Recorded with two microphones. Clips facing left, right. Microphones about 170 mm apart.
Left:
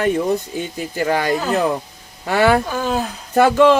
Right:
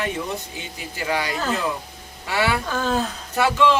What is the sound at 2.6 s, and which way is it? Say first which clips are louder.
Speech: left 2 dB; 15° left (ahead or behind).